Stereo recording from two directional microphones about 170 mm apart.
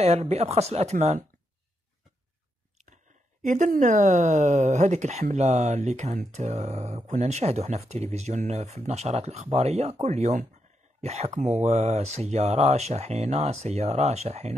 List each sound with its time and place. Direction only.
0.0 s speech: 40° right (ahead or behind)
3.4 s speech: 45° right (ahead or behind)